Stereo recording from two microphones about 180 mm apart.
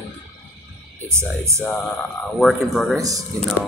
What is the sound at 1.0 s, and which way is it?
Speech, 15° right (ahead or behind).